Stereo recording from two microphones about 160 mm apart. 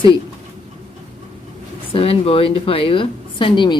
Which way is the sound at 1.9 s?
35° left (ahead or behind).